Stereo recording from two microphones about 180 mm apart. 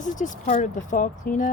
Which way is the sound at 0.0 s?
45° left (ahead or behind).